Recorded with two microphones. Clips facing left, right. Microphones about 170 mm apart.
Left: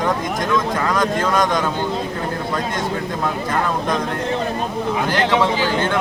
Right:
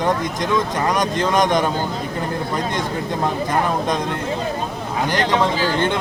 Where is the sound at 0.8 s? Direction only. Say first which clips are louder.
Even; 20° right (ahead or behind).